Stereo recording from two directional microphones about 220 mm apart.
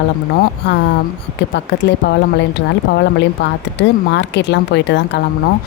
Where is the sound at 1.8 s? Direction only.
55° left (ahead or behind).